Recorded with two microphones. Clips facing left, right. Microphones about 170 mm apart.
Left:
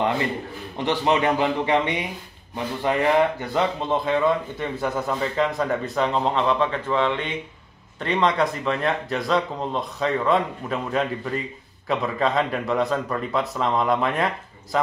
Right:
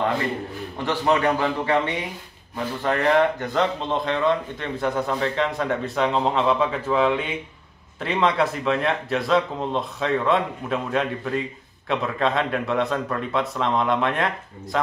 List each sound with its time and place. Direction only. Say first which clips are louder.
0.8 s a man's voice: even; 20° left (ahead or behind); by 14.8 s centre (ahead or behind)